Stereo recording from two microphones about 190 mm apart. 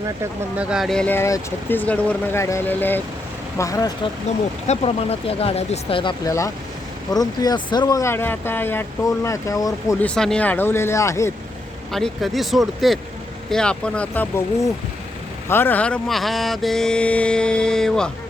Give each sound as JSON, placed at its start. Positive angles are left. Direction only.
{"t": 0.5, "sound": "speech", "side_deg": -5}
{"t": 4.6, "sound": "speech", "side_deg": 35}
{"t": 10.0, "sound": "speech", "side_deg": 5}
{"t": 11.9, "sound": "speech", "side_deg": 0}
{"t": 15.4, "sound": "speech", "side_deg": 10}